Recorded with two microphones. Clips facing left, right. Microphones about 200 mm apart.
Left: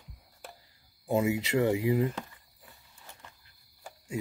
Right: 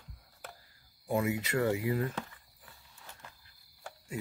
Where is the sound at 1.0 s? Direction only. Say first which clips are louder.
Left 4 dB; 25° left (ahead or behind).